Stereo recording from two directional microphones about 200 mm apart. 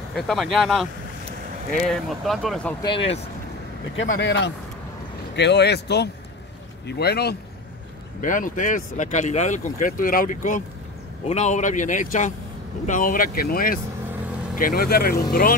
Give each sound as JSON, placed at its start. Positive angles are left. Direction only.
{"t": 0.1, "sound": "speech", "side_deg": 0}
{"t": 2.8, "sound": "speech", "side_deg": 25}
{"t": 4.2, "sound": "speech", "side_deg": 60}
{"t": 8.2, "sound": "speech", "side_deg": 40}